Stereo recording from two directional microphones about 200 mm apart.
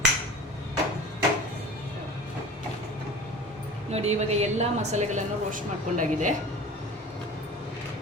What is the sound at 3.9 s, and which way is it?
A woman's voice, 30° right (ahead or behind).